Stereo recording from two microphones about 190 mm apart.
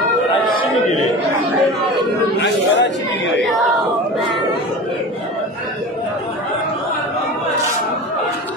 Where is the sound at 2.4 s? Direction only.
70° left (ahead or behind).